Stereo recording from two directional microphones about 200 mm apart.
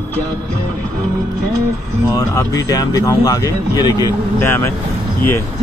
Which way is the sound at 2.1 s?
15° left (ahead or behind).